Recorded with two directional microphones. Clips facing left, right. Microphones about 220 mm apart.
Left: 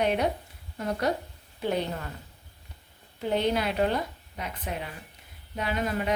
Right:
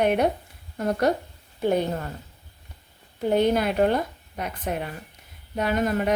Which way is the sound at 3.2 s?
50° right (ahead or behind).